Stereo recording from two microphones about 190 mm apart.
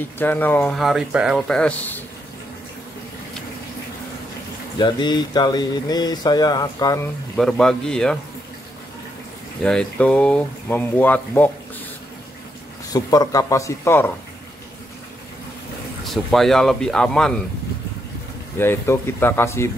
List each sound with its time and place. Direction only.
0.2 s speech: 10° left (ahead or behind)
4.7 s speech: 25° left (ahead or behind)
7.3 s speech: centre (ahead or behind)
9.6 s speech: 5° left (ahead or behind)
12.9 s speech: 20° left (ahead or behind)
16.1 s speech: centre (ahead or behind)
18.6 s speech: 10° left (ahead or behind)